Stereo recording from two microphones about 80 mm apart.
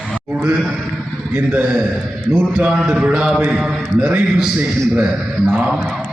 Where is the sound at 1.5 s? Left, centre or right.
Centre.